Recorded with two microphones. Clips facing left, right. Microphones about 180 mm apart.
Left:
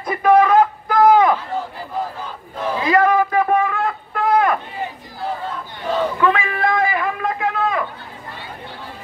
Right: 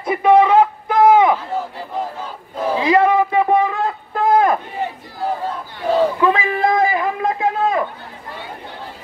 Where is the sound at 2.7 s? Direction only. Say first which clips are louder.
Right 2 dB; 20° right (ahead or behind).